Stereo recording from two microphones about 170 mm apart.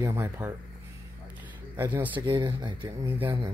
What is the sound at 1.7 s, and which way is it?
Speech, 10° right (ahead or behind).